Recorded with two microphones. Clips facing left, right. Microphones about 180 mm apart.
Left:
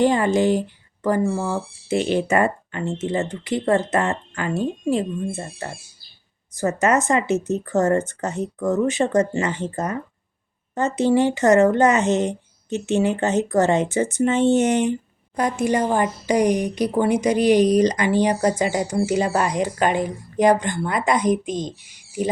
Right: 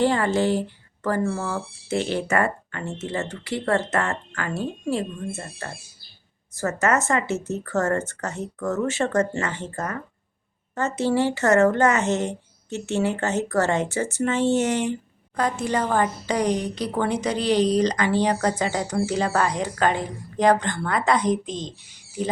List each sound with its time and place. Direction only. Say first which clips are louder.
0.0 s speech: left 3 dB; 15° left (ahead or behind)